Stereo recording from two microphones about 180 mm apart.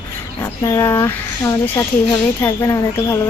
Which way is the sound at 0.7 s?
15° left (ahead or behind).